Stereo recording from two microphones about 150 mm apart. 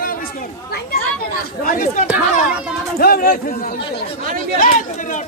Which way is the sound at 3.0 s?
85° left.